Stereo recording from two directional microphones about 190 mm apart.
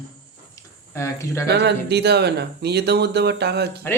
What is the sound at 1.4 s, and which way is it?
Speech, 60° right (ahead or behind).